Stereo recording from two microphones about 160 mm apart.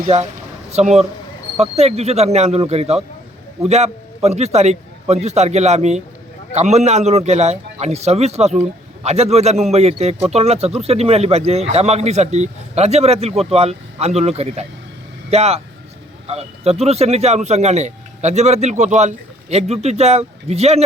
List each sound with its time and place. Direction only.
0.7 s speech: 45° right (ahead or behind)